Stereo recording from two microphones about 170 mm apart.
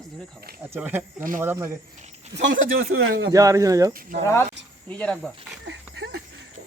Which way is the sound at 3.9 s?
55° right (ahead or behind).